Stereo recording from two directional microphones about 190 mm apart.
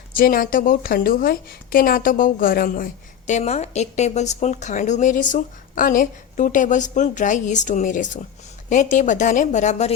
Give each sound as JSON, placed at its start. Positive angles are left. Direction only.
{"t": 0.1, "sound": "a woman's voice", "side_deg": 45}